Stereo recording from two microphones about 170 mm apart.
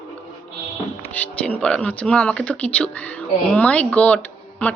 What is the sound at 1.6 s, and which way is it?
Speech, 5° left (ahead or behind).